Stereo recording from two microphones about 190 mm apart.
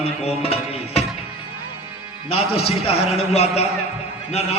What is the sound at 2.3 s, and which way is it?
A man's voice, 30° left (ahead or behind).